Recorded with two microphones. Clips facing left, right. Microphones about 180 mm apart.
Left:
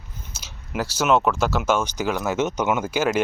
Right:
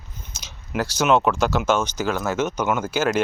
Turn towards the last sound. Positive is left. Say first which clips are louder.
# even
turn(degrees=15)  # may be behind; listen again after turning